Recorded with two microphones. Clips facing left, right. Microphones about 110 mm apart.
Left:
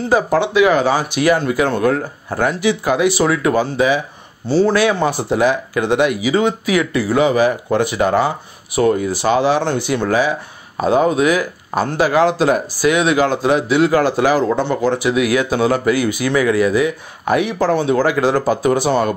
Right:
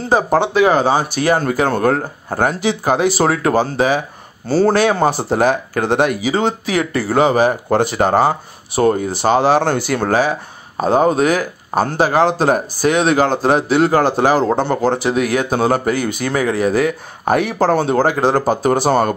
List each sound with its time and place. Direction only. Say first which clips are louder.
0.1 s speech: right 1 dB; 35° right (ahead or behind)